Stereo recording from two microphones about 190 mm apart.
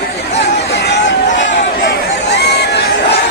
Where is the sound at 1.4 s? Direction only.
70° left (ahead or behind).